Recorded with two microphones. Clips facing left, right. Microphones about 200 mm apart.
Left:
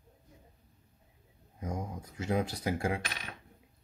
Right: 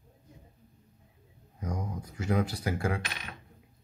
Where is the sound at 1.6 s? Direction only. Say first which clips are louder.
Right 1 dB; 25° left (ahead or behind).